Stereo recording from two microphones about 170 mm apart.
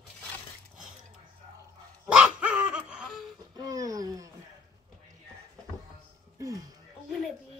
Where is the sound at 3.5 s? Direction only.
20° right (ahead or behind).